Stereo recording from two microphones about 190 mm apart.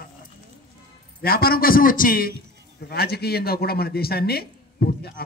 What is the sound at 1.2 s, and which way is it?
A man's voice, 50° left (ahead or behind).